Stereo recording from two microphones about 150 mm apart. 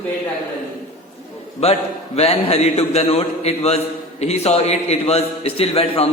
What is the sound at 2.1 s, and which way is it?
A man's voice, 45° left (ahead or behind).